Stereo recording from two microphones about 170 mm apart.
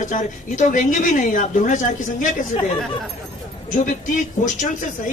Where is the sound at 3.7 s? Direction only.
50° left (ahead or behind).